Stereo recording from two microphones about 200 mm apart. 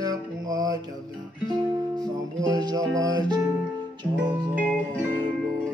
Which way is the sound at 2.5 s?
20° right (ahead or behind).